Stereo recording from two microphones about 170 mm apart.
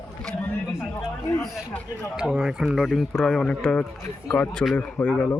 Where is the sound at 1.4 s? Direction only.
Centre (ahead or behind).